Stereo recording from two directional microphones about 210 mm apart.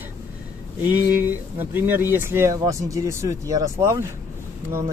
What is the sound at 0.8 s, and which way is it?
Speech, 10° right (ahead or behind).